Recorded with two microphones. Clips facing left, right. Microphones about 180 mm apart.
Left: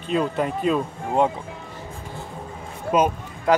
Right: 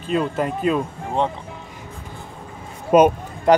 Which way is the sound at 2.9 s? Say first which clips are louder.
Right 7 dB; 50° right (ahead or behind).